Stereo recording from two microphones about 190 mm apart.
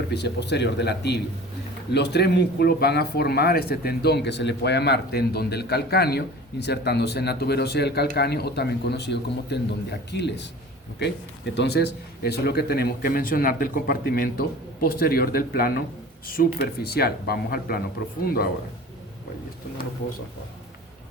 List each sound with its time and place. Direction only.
0.1 s a man's voice: 60° left (ahead or behind)